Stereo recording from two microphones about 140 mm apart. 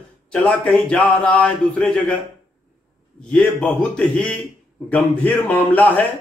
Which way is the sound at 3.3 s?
5° left (ahead or behind).